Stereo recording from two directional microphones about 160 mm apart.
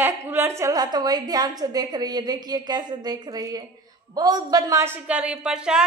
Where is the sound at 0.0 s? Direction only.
15° right (ahead or behind).